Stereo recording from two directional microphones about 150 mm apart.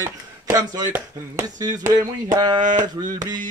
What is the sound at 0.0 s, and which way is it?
Speech, 20° right (ahead or behind).